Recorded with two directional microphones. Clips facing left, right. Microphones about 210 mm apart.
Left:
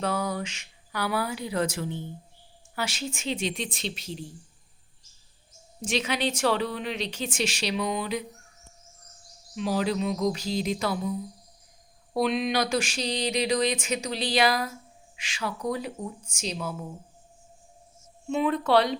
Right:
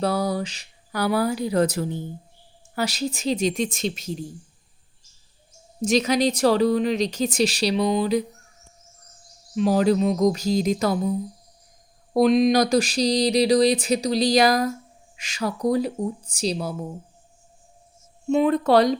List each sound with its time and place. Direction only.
0.0 s speech: 35° right (ahead or behind)
5.8 s speech: 40° right (ahead or behind)
9.6 s a sound: 45° right (ahead or behind)
12.1 s speech: 40° right (ahead or behind)
18.3 s speech: 40° right (ahead or behind)